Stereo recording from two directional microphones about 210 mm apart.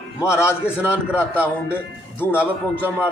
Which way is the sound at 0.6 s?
5° right (ahead or behind).